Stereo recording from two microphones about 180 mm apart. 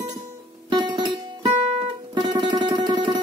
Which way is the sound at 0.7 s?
25° right (ahead or behind).